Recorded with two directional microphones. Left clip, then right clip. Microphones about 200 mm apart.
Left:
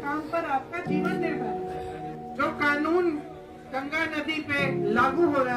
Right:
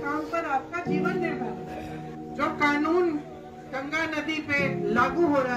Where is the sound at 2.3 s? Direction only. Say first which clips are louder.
Right 1 dB; 20° right (ahead or behind).